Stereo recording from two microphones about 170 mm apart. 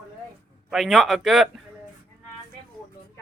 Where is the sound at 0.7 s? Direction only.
Centre (ahead or behind).